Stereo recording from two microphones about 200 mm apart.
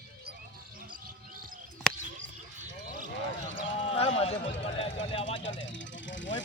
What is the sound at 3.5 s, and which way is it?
Run, 25° left (ahead or behind).